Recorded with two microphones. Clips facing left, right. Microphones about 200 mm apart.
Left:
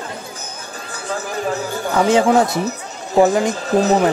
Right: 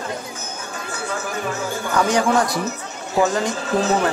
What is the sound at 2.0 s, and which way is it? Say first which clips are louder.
Speech: left 5 dB; 20° left (ahead or behind).